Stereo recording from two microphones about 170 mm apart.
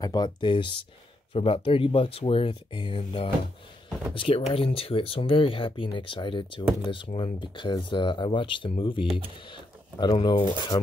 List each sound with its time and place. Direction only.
0.0 s speech: 25° left (ahead or behind)